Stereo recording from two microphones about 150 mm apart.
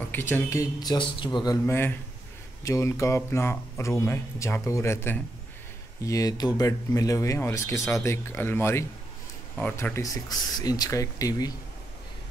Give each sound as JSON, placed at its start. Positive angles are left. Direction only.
{"t": 0.1, "sound": "speech", "side_deg": 15}